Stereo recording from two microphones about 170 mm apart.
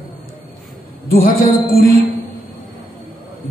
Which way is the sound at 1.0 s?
60° left (ahead or behind).